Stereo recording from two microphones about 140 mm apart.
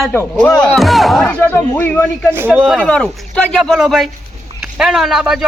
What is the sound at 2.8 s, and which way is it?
A man's voice, 5° left (ahead or behind).